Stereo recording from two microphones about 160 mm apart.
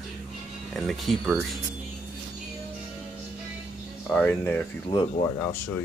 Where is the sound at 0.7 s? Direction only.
Centre (ahead or behind).